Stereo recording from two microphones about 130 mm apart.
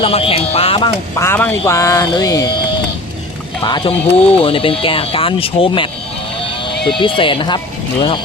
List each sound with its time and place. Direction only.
0.0 s speech: 45° left (ahead or behind)
1.2 s speech: 15° left (ahead or behind)
3.6 s speech: 35° left (ahead or behind)
7.0 s speech: 40° left (ahead or behind)